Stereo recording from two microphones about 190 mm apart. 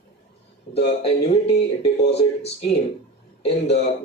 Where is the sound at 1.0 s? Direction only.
35° left (ahead or behind).